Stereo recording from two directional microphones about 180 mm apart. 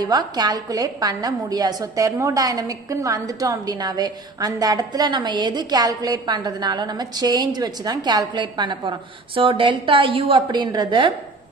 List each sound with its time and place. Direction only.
0.0 s a woman's voice: 20° right (ahead or behind)